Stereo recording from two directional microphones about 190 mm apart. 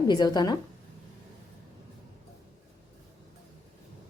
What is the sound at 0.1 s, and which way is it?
Speech, 20° left (ahead or behind).